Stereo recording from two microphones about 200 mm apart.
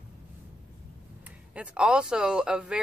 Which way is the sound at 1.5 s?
5° right (ahead or behind).